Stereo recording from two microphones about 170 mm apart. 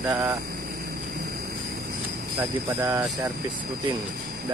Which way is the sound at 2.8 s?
20° right (ahead or behind).